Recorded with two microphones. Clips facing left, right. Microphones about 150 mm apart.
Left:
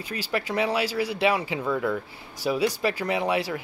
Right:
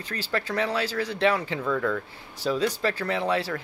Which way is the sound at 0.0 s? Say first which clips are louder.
Left 1 dB; 10° left (ahead or behind).